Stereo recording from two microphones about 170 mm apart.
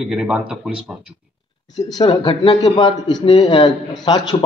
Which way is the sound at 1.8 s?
25° left (ahead or behind).